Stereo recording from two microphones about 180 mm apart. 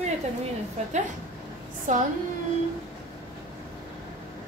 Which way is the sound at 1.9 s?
45° right (ahead or behind).